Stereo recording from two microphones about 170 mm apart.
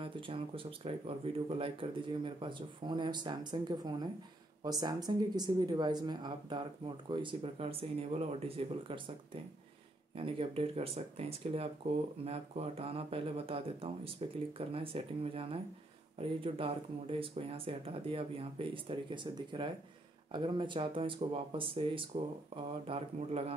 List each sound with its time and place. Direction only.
0.0 s speech: 30° right (ahead or behind)
10.1 s speech: 30° right (ahead or behind)